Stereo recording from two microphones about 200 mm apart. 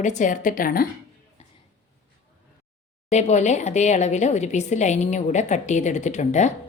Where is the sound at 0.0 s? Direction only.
35° left (ahead or behind).